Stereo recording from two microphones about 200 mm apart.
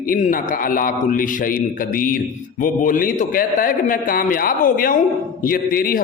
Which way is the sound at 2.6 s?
40° left (ahead or behind).